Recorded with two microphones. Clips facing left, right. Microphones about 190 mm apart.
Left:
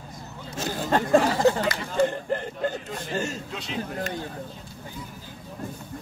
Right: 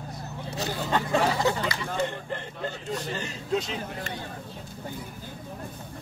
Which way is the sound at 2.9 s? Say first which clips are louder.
Left 2 dB; 45° left (ahead or behind).